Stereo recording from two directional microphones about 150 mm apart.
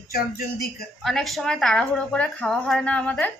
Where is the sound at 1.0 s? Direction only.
Centre (ahead or behind).